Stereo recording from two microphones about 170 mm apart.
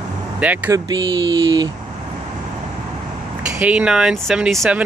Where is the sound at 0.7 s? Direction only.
20° right (ahead or behind).